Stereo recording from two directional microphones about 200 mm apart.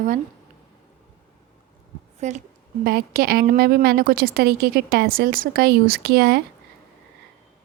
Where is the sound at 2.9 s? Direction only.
50° right (ahead or behind).